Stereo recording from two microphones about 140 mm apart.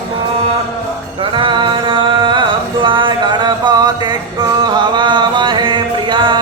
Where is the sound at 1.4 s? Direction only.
35° right (ahead or behind).